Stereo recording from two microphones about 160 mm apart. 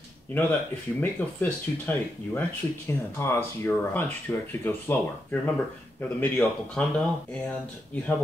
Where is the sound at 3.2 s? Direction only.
15° left (ahead or behind).